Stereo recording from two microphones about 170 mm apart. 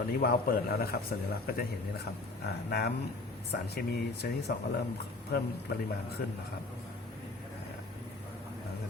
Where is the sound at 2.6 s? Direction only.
70° left (ahead or behind).